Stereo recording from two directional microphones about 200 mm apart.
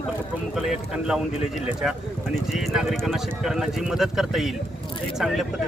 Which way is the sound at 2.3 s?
Centre (ahead or behind).